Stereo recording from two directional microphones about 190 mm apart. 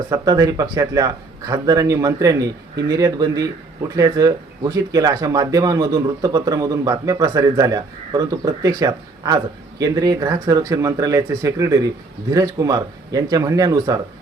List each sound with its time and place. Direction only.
0.1 s speech: 20° right (ahead or behind)